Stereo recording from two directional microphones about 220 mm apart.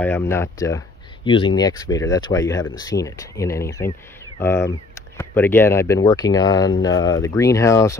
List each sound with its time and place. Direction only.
0.0 s speech: 10° left (ahead or behind)